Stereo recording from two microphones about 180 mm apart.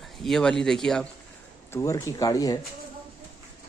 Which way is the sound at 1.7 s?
15° left (ahead or behind).